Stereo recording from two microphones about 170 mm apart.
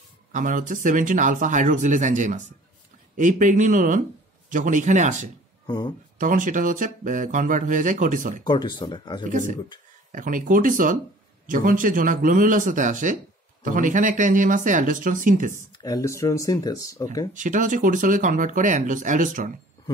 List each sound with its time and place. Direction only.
0.3 s speech: 50° right (ahead or behind)
5.7 s speech: 25° left (ahead or behind)
6.1 s speech: 50° right (ahead or behind)
8.5 s speech: 25° left (ahead or behind)
10.1 s speech: 50° right (ahead or behind)
15.8 s speech: 20° left (ahead or behind)
17.3 s speech: 50° right (ahead or behind)